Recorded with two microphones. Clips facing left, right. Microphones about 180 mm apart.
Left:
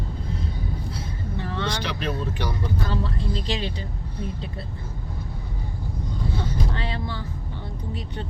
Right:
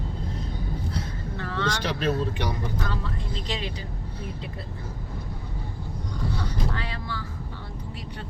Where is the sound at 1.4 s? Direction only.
15° left (ahead or behind).